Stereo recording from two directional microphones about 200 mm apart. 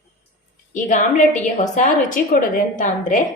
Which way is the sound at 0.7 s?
40° left (ahead or behind).